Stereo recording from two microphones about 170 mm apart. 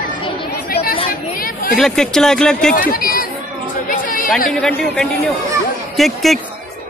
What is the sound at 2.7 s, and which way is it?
Speech, 55° left (ahead or behind).